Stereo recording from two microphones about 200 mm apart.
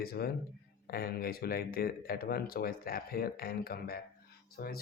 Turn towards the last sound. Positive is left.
turn(degrees=50)  # may be behind; listen again after turning